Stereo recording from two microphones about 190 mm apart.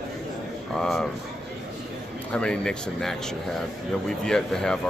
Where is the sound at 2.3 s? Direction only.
5° left (ahead or behind).